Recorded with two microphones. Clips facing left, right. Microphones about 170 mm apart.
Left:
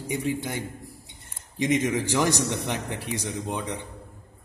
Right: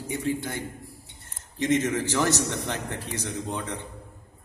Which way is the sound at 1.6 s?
15° left (ahead or behind).